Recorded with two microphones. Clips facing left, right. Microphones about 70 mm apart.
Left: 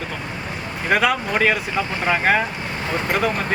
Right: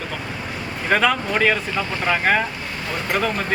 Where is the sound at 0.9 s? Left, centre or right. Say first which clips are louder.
Even; centre.